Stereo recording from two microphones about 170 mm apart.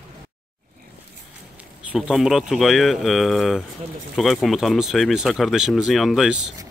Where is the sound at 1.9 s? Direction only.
Centre (ahead or behind).